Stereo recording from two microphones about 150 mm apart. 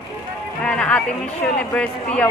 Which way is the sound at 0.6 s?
10° left (ahead or behind).